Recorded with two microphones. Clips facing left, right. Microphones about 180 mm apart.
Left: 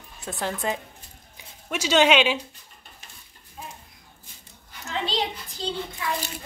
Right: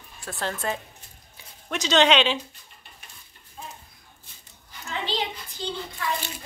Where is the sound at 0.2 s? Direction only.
20° left (ahead or behind).